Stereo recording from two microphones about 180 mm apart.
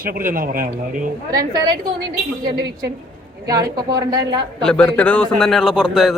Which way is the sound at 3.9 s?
20° right (ahead or behind).